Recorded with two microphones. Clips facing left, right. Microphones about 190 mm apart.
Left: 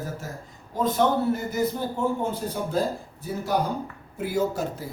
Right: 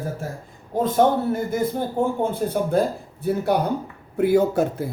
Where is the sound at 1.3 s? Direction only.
50° right (ahead or behind).